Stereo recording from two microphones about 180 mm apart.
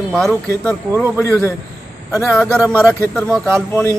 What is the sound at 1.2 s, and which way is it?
Speech, 15° left (ahead or behind).